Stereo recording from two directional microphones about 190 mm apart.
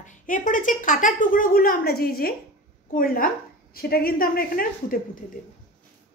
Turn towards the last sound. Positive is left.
turn(degrees=50)  # may be behind; listen again after turning